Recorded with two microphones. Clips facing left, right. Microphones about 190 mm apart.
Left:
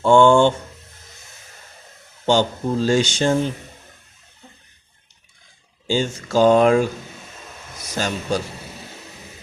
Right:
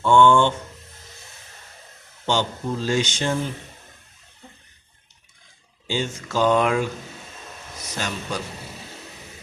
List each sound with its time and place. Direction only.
0.0 s speech: 30° left (ahead or behind)
2.2 s speech: 35° left (ahead or behind)
5.9 s speech: 35° left (ahead or behind)
7.9 s speech: 35° left (ahead or behind)